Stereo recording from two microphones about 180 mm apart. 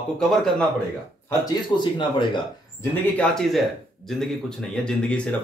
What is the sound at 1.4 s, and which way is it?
Speech, 25° left (ahead or behind).